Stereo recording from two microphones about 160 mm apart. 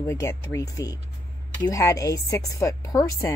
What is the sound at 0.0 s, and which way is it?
A woman's voice, 20° left (ahead or behind).